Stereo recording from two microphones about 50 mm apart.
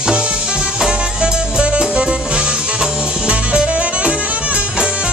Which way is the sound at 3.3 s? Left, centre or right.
Right.